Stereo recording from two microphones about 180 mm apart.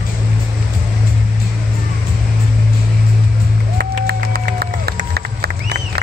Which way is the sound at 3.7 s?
60° right (ahead or behind).